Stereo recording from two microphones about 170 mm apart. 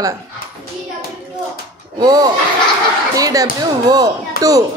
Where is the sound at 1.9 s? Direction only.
25° right (ahead or behind).